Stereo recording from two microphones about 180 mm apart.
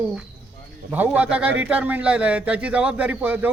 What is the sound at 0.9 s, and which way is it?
A man's voice, 10° right (ahead or behind).